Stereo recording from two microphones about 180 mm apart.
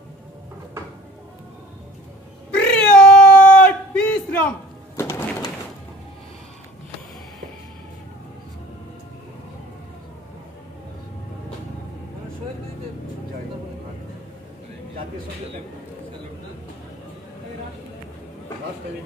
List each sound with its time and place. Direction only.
2.5 s cat: 5° left (ahead or behind)
4.9 s pigeon: 20° left (ahead or behind)